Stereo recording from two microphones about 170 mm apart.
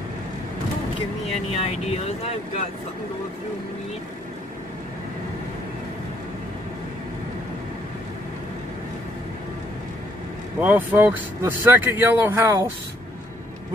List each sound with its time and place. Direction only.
1.5 s speech: 35° left (ahead or behind)
10.6 s speech: 10° right (ahead or behind)